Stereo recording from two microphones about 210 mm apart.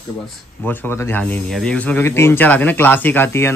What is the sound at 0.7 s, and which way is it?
Speech, 10° left (ahead or behind).